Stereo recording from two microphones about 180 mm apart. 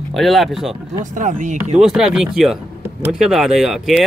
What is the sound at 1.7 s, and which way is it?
Speech, 5° right (ahead or behind).